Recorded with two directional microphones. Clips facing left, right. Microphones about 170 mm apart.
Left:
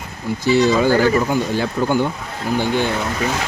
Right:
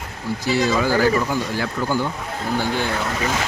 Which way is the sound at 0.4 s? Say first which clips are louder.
Left 5 dB; 25° left (ahead or behind).